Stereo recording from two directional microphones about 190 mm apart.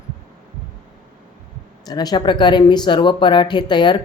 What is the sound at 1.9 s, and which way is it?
Speech, 20° left (ahead or behind).